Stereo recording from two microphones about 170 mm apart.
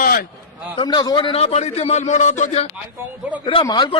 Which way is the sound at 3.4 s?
30° left (ahead or behind).